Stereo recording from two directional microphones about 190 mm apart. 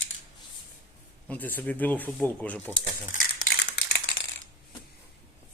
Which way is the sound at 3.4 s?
60° left (ahead or behind).